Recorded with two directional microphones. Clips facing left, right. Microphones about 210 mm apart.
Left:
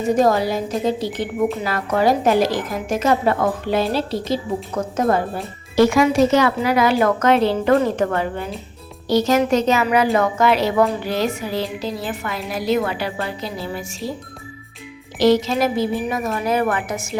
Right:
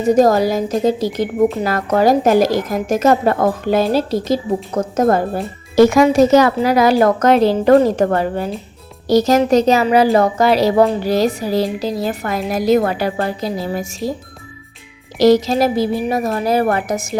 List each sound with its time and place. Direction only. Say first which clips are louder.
0.1 s a woman's voice: right 5 dB; 40° right (ahead or behind)
15.2 s a woman's voice: right 4 dB; 40° right (ahead or behind)